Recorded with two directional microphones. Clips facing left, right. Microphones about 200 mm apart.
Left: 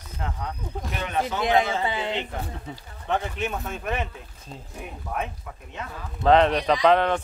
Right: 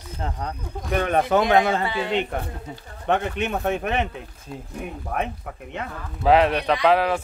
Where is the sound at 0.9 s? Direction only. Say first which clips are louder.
Right 8 dB; 55° right (ahead or behind).